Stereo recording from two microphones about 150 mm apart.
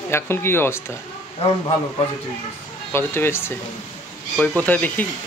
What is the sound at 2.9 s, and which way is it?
Speech, 15° left (ahead or behind).